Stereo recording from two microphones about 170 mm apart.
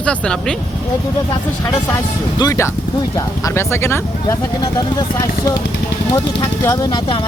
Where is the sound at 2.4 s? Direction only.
20° left (ahead or behind).